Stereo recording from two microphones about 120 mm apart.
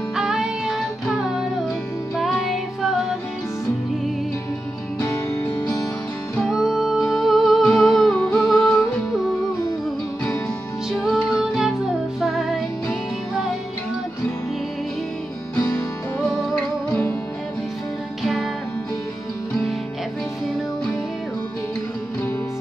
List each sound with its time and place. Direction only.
0.1 s music: 5° right (ahead or behind)
2.1 s music: centre (ahead or behind)
5.0 s music: 20° left (ahead or behind)
6.5 s music: 5° right (ahead or behind)
10.9 s music: centre (ahead or behind)
18.2 s music: centre (ahead or behind)